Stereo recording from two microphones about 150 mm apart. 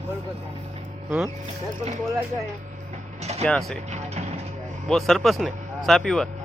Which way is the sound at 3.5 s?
5° left (ahead or behind).